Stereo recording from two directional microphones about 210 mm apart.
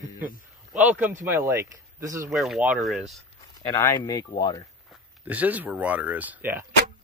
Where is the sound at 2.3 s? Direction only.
Centre (ahead or behind).